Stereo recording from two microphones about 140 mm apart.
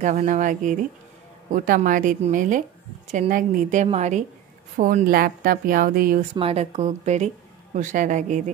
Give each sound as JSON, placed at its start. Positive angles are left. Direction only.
{"t": 0.0, "sound": "a woman's voice", "side_deg": -60}
{"t": 4.7, "sound": "a woman's voice", "side_deg": -65}
{"t": 6.3, "sound": "a woman's voice", "side_deg": -45}